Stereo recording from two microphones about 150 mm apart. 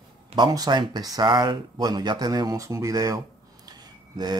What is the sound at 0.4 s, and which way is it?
Speech, 25° right (ahead or behind).